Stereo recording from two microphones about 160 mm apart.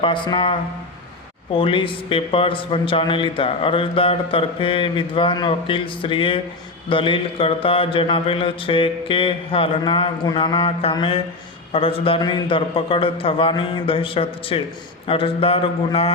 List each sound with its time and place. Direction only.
0.0 s speech: 30° left (ahead or behind)
1.5 s speech: 35° left (ahead or behind)